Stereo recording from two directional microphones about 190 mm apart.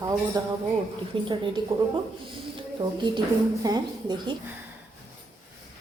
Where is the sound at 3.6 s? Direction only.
20° right (ahead or behind).